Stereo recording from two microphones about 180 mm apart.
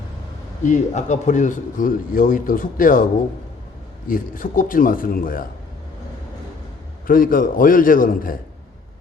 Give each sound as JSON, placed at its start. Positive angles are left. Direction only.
{"t": 0.6, "sound": "speech", "side_deg": 40}
{"t": 4.1, "sound": "speech", "side_deg": 50}
{"t": 7.1, "sound": "speech", "side_deg": 50}